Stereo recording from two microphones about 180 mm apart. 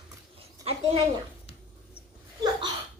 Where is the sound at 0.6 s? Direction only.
20° right (ahead or behind).